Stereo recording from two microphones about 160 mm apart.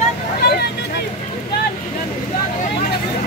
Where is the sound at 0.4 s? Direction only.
80° left.